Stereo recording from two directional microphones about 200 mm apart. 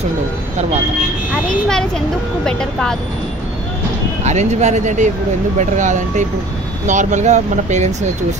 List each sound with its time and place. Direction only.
2.4 s speech: 5° left (ahead or behind)
4.2 s speech: 35° right (ahead or behind)